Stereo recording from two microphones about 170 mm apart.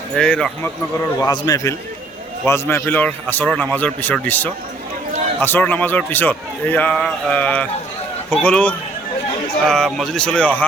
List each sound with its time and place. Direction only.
0.2 s speech: 5° left (ahead or behind)
1.2 s a man's voice: 20° left (ahead or behind)